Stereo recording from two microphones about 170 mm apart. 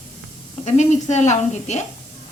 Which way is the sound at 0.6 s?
45° left (ahead or behind).